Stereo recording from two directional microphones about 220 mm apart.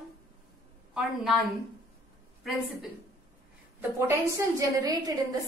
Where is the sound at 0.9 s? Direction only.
Centre (ahead or behind).